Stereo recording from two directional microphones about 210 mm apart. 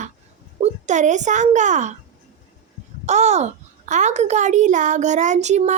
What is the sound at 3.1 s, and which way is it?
A child's voice, 35° right (ahead or behind).